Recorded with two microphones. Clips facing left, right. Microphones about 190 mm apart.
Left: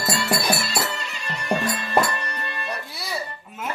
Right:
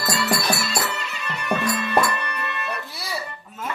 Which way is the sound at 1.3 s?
35° left (ahead or behind).